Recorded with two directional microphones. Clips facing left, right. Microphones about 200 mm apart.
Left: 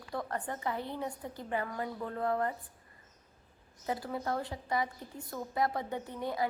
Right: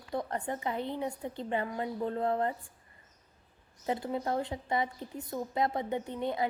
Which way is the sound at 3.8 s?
20° right (ahead or behind).